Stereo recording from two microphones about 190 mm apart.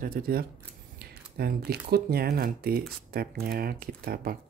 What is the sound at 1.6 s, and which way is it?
Speech, 55° right (ahead or behind).